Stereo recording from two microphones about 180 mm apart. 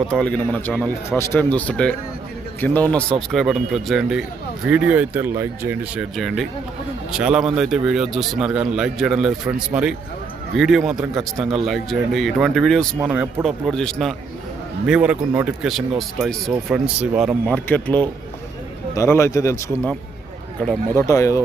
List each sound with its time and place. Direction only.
0.1 s a man's voice: 5° left (ahead or behind)
20.9 s speech: 15° left (ahead or behind)